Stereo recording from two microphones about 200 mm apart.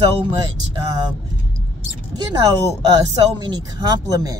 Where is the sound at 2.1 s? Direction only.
20° right (ahead or behind).